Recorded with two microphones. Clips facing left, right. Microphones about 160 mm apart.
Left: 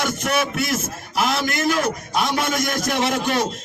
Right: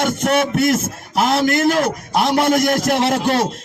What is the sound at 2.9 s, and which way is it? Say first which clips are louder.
Speech: right 4 dB; 35° right (ahead or behind).